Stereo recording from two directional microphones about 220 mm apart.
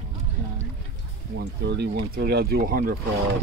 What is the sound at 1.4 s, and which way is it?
Speech, 50° right (ahead or behind).